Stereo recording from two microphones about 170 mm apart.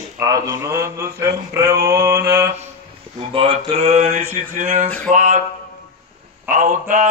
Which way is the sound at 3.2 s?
30° right (ahead or behind).